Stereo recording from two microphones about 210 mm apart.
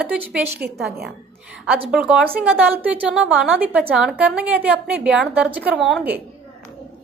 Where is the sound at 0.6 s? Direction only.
45° right (ahead or behind).